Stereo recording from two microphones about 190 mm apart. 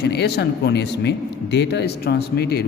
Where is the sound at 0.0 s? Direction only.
60° left (ahead or behind).